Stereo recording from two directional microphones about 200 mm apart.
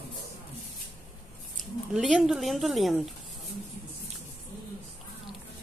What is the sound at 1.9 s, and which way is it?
Speech, 5° right (ahead or behind).